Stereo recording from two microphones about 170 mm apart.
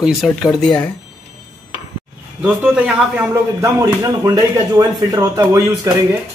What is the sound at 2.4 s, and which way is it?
A man's voice, 5° right (ahead or behind).